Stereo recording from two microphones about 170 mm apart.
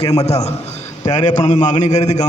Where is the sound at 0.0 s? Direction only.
35° left (ahead or behind).